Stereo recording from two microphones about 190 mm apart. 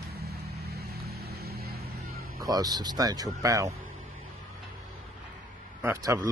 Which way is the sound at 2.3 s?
20° right (ahead or behind).